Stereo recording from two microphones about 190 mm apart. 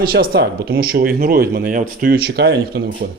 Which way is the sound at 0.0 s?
50° right (ahead or behind).